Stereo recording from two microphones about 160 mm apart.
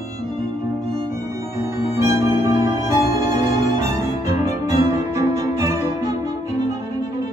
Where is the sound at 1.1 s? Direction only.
15° right (ahead or behind).